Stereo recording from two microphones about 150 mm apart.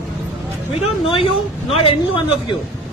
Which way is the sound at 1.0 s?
35° left (ahead or behind).